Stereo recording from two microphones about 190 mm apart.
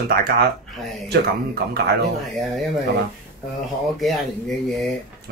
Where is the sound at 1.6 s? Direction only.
60° right (ahead or behind).